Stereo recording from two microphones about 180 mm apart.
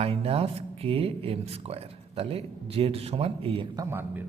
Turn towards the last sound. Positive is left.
turn(degrees=-10)  # may be behind; listen again after turning